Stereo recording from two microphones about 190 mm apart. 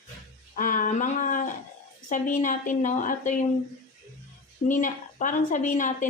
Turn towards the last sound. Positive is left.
turn(degrees=45)  # may be behind; listen again after turning